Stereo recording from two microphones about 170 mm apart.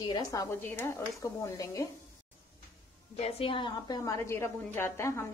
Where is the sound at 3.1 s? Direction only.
35° left (ahead or behind); by 5.2 s 15° left (ahead or behind).